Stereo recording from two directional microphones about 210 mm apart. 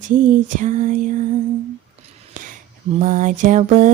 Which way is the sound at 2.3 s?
40° right (ahead or behind).